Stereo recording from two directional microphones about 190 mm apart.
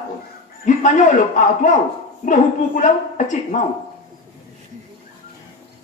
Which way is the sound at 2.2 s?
40° left (ahead or behind).